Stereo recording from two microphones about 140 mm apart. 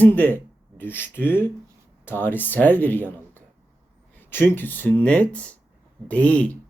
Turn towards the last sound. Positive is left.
turn(degrees=10)  # may be behind; listen again after turning